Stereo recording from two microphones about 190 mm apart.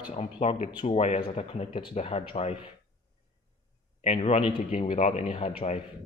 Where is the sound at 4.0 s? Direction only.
35° left (ahead or behind).